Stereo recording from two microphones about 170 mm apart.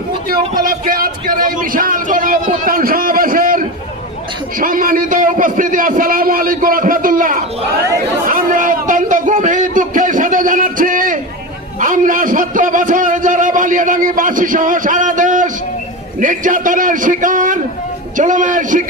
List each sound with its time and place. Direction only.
0.3 s a man's voice: 55° right (ahead or behind)
8.3 s a sound: 55° right (ahead or behind)
11.8 s a man's voice: 50° right (ahead or behind)